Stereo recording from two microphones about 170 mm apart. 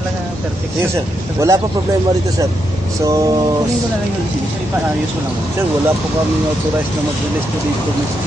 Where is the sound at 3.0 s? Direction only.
20° right (ahead or behind).